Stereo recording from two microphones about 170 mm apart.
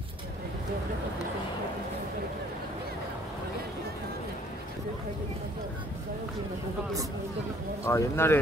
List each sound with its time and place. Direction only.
7.8 s speech: 15° left (ahead or behind)